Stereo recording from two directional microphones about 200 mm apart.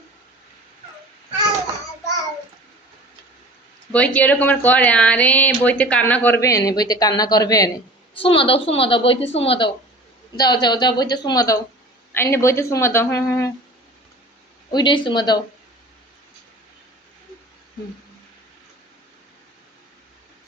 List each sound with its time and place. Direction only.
3.9 s a woman's voice: 5° left (ahead or behind)
14.7 s a woman's voice: 20° left (ahead or behind)